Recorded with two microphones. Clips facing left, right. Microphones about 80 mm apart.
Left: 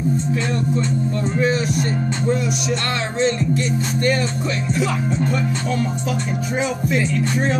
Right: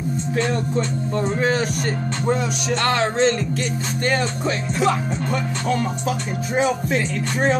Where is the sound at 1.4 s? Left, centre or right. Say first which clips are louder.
Left 2 dB; right.